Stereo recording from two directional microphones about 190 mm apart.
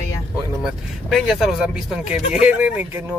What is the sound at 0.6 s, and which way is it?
Speech, centre (ahead or behind).